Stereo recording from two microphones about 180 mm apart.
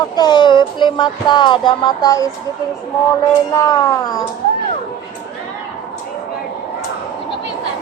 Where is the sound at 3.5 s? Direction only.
20° left (ahead or behind).